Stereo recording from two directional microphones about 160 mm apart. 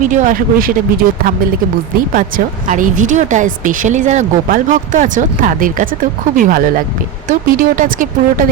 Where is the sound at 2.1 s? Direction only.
60° right (ahead or behind).